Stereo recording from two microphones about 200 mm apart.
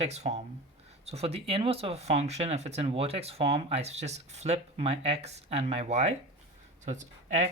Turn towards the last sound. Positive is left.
turn(degrees=-35)  # may be behind; listen again after turning